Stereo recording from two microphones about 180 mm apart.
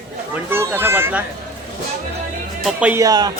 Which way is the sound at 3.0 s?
20° right (ahead or behind).